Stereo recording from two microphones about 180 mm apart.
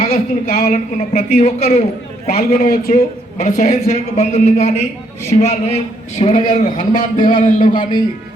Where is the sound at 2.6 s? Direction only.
50° left (ahead or behind).